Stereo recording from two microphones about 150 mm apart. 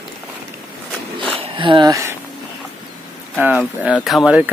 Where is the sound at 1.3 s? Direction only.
35° right (ahead or behind).